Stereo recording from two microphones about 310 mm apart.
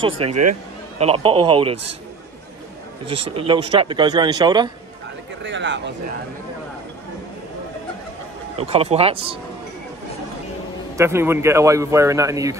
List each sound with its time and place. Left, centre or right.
0.3 s speech: right
0.9 s speech: centre
3.1 s speech: centre
5.4 s speech: right
8.5 s speech: centre
11.0 s speech: centre